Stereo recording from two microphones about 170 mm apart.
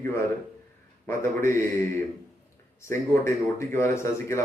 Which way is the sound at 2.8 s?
15° left (ahead or behind).